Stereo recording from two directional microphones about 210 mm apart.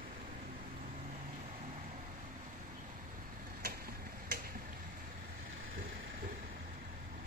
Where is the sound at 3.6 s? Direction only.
45° right (ahead or behind).